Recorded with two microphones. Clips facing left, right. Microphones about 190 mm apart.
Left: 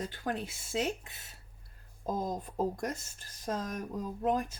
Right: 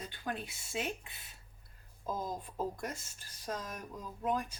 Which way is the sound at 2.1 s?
45° left (ahead or behind).